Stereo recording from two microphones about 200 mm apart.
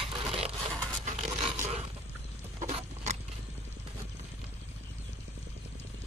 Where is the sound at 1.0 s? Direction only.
35° right (ahead or behind).